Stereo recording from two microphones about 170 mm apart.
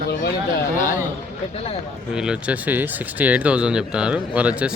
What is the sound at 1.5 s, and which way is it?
Speech, 35° left (ahead or behind).